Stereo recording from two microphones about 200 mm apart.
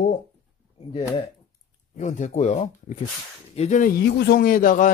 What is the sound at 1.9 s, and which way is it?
A man's voice, 40° left (ahead or behind).